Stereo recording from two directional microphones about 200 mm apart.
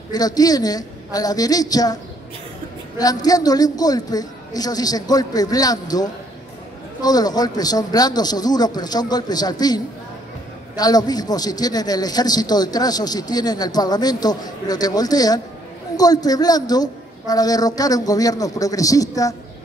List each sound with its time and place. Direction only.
0.1 s a man's voice: 20° left (ahead or behind)
3.0 s a man's voice: 20° left (ahead or behind)
10.8 s a man's voice: 20° left (ahead or behind)